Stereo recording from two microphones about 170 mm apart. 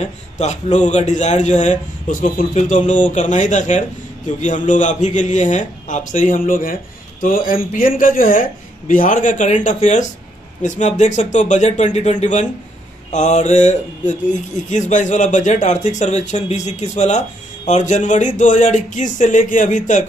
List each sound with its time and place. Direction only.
0.0 s a man's voice: 40° left (ahead or behind)